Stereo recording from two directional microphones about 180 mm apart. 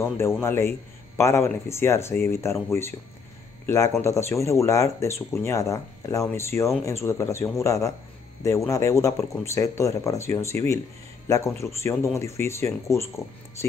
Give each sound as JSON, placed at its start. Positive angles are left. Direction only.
{"t": 0.0, "sound": "a man's voice", "side_deg": 15}